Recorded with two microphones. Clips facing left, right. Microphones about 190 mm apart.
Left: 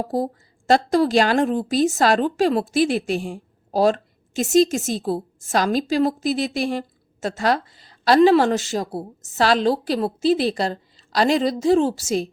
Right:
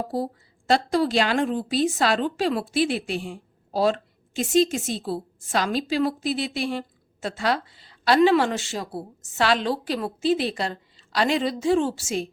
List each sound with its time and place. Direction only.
0.1 s a woman's voice: 45° left (ahead or behind)